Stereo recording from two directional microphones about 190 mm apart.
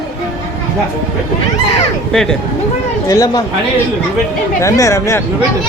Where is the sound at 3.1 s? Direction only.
15° left (ahead or behind).